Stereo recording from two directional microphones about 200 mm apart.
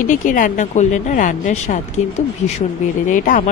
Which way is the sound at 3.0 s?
40° left (ahead or behind).